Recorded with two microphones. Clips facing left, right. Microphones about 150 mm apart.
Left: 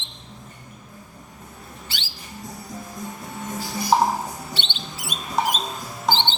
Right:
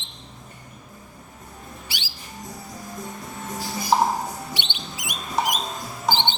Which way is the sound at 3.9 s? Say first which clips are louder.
Left 1 dB; centre (ahead or behind).